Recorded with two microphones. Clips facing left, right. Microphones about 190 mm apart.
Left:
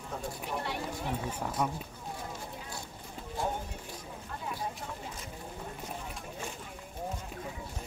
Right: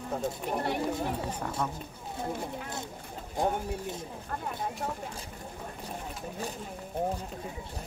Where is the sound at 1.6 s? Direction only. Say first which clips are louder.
Left 2 dB; 10° left (ahead or behind).